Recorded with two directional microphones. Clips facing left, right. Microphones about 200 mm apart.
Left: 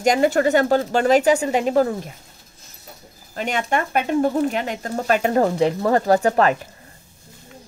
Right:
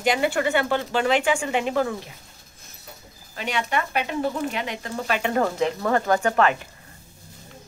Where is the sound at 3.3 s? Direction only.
45° left (ahead or behind).